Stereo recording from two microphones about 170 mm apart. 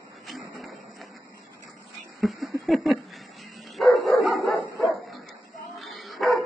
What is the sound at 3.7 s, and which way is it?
Dog, centre (ahead or behind).